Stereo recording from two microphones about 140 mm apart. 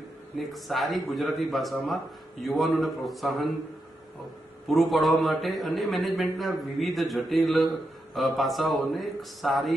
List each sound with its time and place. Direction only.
0.4 s a man's voice: centre (ahead or behind)
4.6 s a man's voice: centre (ahead or behind)